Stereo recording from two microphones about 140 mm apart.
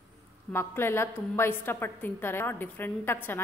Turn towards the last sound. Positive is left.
turn(degrees=15)  # may be behind; listen again after turning